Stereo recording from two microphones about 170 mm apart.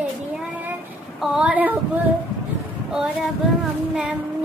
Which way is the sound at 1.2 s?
5° right (ahead or behind).